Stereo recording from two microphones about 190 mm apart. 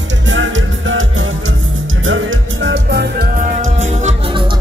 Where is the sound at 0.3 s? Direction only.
90° right; by 3.3 s 60° right (ahead or behind).